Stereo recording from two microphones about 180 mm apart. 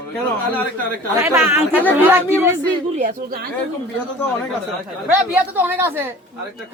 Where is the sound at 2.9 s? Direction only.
50° right (ahead or behind).